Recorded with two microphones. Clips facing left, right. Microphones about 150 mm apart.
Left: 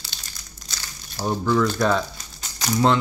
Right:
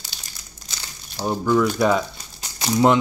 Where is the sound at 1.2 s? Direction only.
15° right (ahead or behind).